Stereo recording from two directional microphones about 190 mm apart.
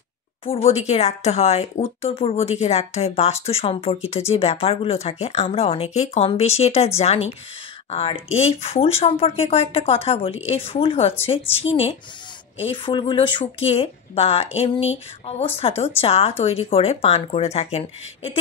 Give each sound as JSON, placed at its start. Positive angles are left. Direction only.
{"t": 0.5, "sound": "speech", "side_deg": 35}
{"t": 12.5, "sound": "speech", "side_deg": 30}